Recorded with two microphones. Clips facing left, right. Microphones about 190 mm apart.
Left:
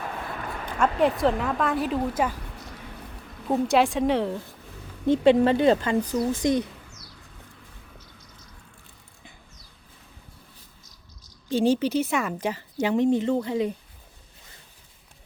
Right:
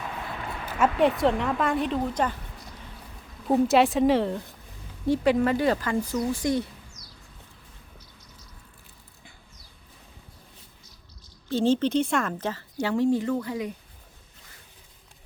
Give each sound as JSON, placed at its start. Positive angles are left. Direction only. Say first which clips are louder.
{"t": 0.6, "sound": "speech", "louder": "even", "side_deg": -5}
{"t": 3.5, "sound": "speech", "louder": "right 1 dB", "side_deg": 0}
{"t": 5.0, "sound": "a woman's voice", "louder": "left 4 dB", "side_deg": 25}
{"t": 11.4, "sound": "a woman's voice", "louder": "left 1 dB", "side_deg": 15}